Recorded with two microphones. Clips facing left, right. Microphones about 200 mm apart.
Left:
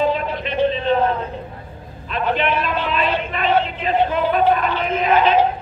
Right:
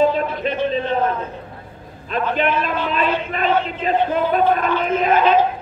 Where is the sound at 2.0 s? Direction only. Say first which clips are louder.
Even; 40° right (ahead or behind).